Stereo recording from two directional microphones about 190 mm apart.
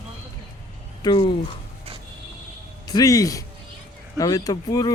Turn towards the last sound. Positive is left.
turn(degrees=20)  # may be behind; listen again after turning